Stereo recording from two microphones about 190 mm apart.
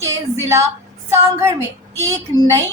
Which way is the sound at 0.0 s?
15° right (ahead or behind).